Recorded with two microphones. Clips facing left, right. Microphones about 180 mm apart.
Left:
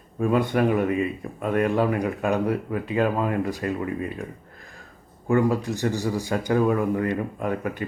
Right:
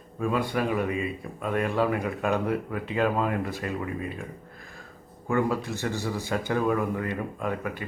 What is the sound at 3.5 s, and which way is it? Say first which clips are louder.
Speech: left 4 dB; 35° left (ahead or behind).